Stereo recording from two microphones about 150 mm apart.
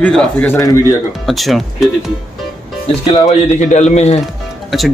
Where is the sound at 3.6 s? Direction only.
50° left (ahead or behind).